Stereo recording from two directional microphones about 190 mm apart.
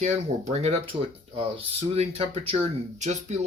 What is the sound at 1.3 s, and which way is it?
Speech, 30° right (ahead or behind).